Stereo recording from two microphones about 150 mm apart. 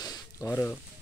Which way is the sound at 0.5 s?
15° left (ahead or behind).